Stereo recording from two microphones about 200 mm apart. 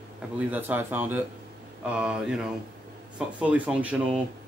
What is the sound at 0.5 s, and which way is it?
Speech, 10° right (ahead or behind).